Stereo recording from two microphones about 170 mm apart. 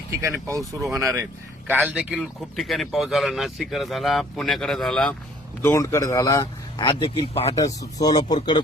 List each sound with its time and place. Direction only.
0.1 s speech: 15° right (ahead or behind); by 5.1 s 5° left (ahead or behind)
5.6 s a man's voice: 15° left (ahead or behind)
7.0 s speech: 35° left (ahead or behind)
7.5 s speech: 20° left (ahead or behind)